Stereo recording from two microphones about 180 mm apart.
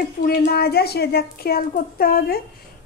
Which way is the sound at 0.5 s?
60° left (ahead or behind).